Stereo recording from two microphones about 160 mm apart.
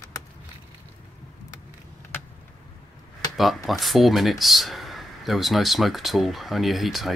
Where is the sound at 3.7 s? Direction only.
Centre (ahead or behind).